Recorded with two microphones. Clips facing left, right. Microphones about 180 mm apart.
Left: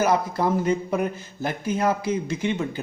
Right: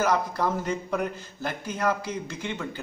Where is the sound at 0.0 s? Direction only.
10° left (ahead or behind).